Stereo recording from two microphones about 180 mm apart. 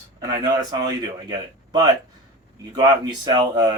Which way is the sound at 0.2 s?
20° right (ahead or behind).